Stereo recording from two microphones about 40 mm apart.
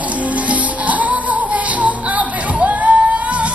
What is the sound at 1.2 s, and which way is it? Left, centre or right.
Music, right.